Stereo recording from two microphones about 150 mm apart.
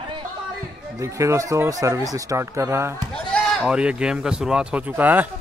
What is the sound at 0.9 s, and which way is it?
Speech, 20° right (ahead or behind).